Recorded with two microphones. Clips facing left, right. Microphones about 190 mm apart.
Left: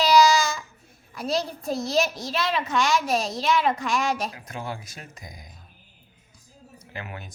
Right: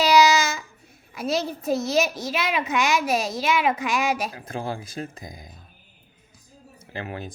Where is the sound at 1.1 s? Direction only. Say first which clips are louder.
Right 1 dB; centre (ahead or behind).